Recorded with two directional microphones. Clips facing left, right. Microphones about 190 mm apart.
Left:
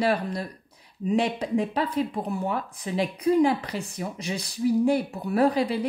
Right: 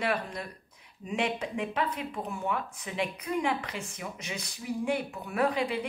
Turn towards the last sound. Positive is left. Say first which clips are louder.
# left 6 dB
turn(degrees=35)  # may be behind; listen again after turning